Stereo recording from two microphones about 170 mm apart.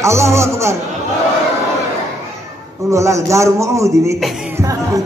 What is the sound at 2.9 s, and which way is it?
A man's voice, 15° right (ahead or behind).